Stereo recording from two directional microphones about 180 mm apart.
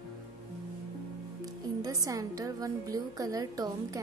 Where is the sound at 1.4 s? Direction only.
20° right (ahead or behind).